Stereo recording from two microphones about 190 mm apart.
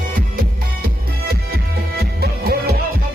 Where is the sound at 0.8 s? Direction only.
55° right (ahead or behind).